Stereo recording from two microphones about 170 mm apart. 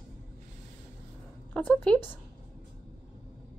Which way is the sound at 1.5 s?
10° left (ahead or behind).